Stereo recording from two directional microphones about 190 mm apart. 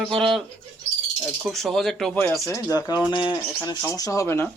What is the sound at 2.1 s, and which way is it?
Speech, 10° left (ahead or behind).